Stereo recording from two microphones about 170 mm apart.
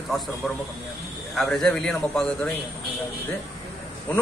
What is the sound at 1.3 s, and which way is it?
A man's voice, centre (ahead or behind).